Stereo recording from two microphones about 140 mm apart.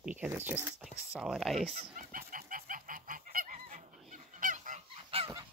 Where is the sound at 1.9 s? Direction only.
75° right (ahead or behind).